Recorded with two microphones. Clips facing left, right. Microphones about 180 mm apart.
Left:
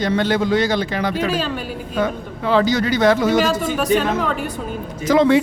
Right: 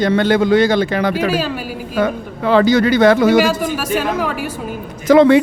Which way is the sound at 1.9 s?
60° right (ahead or behind).